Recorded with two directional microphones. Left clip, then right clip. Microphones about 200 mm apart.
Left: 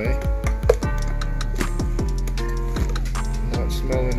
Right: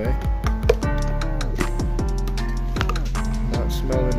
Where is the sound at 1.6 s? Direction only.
Centre (ahead or behind).